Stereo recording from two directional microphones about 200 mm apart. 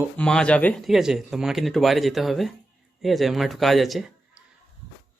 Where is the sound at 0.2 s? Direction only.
5° left (ahead or behind).